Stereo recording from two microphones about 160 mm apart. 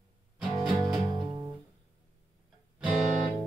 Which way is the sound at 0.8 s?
25° right (ahead or behind).